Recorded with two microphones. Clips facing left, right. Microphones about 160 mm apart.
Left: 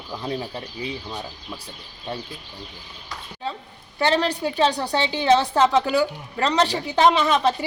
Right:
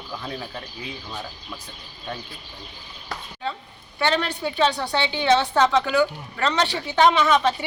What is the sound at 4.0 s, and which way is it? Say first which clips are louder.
A woman's voice: left 3 dB; 35° left (ahead or behind).